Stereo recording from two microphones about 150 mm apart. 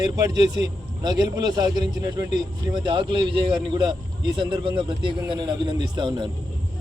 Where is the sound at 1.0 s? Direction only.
25° right (ahead or behind).